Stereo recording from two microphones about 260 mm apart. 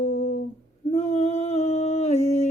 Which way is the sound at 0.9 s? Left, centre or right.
Left.